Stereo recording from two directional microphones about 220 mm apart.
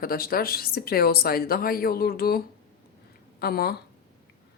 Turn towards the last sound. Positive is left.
turn(degrees=45)  # may be behind; listen again after turning